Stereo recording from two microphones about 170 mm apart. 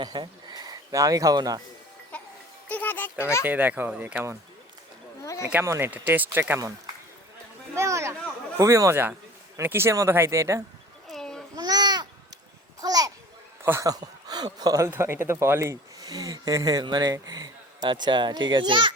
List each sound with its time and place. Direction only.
0.0 s speech: 25° right (ahead or behind)
2.6 s a sound: 10° left (ahead or behind)
3.4 s speech: 10° right (ahead or behind)
5.4 s speech: 10° right (ahead or behind)
7.8 s speech: 15° right (ahead or behind)
11.1 s babbling: 5° left (ahead or behind)
11.5 s babbling: 25° right (ahead or behind)
13.6 s speech: 15° right (ahead or behind)